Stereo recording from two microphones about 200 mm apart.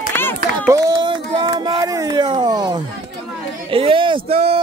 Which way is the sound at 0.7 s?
20° right (ahead or behind).